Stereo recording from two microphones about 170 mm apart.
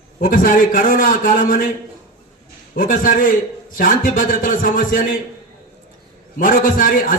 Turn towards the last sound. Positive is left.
turn(degrees=55)  # may be behind; listen again after turning